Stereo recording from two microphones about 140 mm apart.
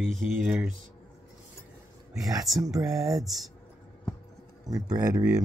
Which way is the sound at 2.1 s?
25° right (ahead or behind).